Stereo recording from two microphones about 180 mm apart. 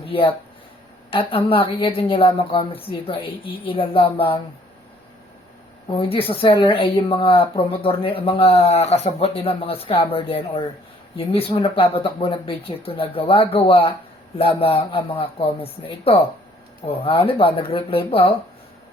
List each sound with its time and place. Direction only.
0.0 s a woman's voice: 30° left (ahead or behind)
5.9 s speech: 30° left (ahead or behind)